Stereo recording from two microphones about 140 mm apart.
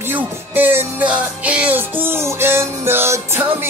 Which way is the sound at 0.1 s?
15° right (ahead or behind).